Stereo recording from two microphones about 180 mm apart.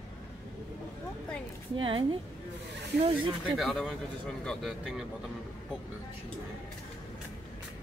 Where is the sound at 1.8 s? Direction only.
30° right (ahead or behind).